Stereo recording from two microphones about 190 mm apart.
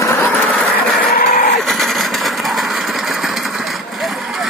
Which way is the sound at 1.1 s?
50° left (ahead or behind).